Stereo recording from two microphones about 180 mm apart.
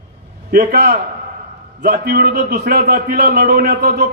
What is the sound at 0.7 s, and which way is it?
Speech, 50° right (ahead or behind).